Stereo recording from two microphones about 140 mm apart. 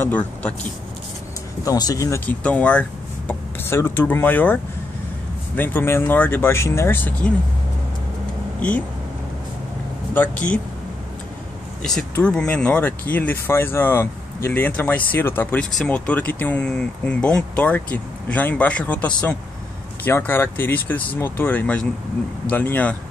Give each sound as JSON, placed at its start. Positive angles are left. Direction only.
{"t": 0.0, "sound": "speech", "side_deg": 10}
{"t": 1.6, "sound": "speech", "side_deg": 25}
{"t": 5.6, "sound": "speech", "side_deg": 15}
{"t": 8.5, "sound": "speech", "side_deg": 10}
{"t": 10.1, "sound": "speech", "side_deg": 10}
{"t": 11.8, "sound": "speech", "side_deg": 5}